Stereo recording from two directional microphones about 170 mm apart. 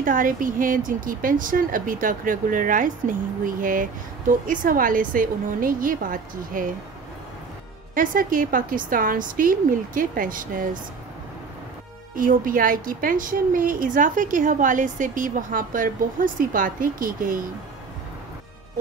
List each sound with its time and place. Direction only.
0.0 s speech: 50° right (ahead or behind)
7.9 s speech: 55° right (ahead or behind)
12.2 s speech: 55° right (ahead or behind)